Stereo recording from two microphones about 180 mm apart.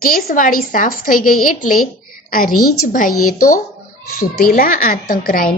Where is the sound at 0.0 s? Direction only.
55° left (ahead or behind).